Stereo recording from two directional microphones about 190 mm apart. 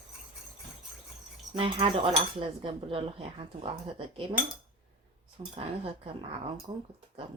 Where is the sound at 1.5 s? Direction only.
30° right (ahead or behind).